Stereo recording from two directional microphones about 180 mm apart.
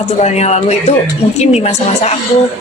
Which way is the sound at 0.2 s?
40° left (ahead or behind).